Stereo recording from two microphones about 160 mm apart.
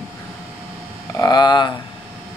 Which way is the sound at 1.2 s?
25° left (ahead or behind).